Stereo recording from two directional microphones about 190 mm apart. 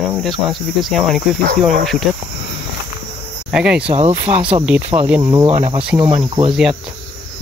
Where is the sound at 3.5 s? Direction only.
5° right (ahead or behind).